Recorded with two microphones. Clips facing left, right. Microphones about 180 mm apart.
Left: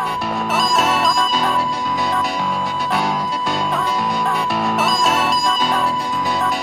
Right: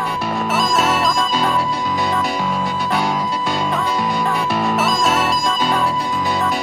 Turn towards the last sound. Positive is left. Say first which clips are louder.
# right 1 dB
turn(degrees=0)  # may be behind; listen again after turning